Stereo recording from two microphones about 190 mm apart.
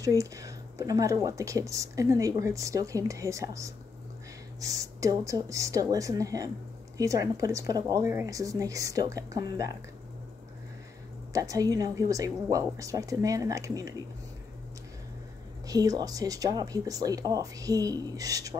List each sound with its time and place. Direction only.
0.0 s speech: 15° right (ahead or behind)
11.3 s speech: 15° right (ahead or behind)
15.6 s speech: 20° right (ahead or behind)